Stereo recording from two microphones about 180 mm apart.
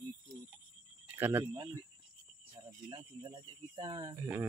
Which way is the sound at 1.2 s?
10° right (ahead or behind).